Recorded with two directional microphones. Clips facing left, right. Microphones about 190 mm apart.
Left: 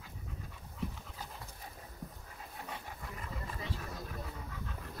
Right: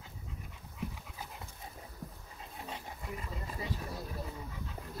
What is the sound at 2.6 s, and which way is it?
Dog, 20° right (ahead or behind).